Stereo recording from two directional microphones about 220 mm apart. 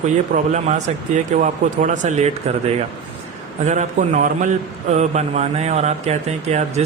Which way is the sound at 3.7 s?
35° right (ahead or behind).